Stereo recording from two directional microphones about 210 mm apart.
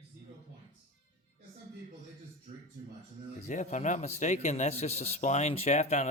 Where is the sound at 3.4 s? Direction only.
35° left (ahead or behind).